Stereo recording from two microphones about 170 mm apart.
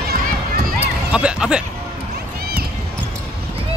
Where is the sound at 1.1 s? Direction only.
5° right (ahead or behind).